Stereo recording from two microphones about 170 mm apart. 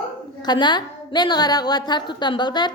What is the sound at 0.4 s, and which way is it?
A woman's voice, 25° left (ahead or behind).